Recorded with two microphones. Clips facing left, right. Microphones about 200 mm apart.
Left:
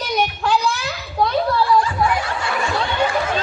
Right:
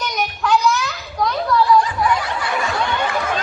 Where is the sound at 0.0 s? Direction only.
30° left (ahead or behind).